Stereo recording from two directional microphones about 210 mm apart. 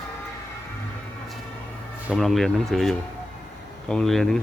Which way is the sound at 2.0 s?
Centre (ahead or behind).